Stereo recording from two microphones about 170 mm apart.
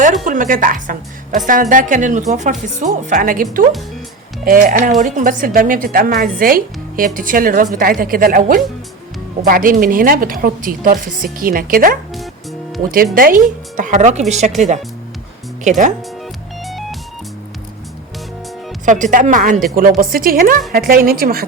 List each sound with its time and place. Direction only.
0.3 s a woman's voice: 50° right (ahead or behind)
13.7 s speech: 45° right (ahead or behind)
16.6 s music: centre (ahead or behind)
18.9 s a woman's voice: 50° right (ahead or behind)